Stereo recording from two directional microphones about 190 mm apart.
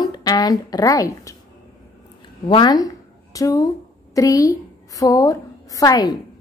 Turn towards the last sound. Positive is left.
turn(degrees=20)  # may be behind; listen again after turning